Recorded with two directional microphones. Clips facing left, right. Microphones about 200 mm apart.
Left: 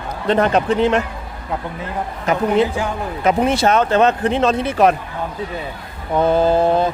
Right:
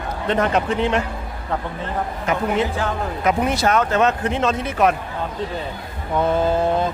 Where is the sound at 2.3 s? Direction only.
35° left (ahead or behind).